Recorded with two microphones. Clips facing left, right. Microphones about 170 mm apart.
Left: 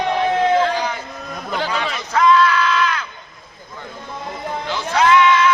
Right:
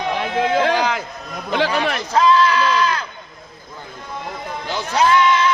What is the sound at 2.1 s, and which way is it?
Sheep, 30° right (ahead or behind).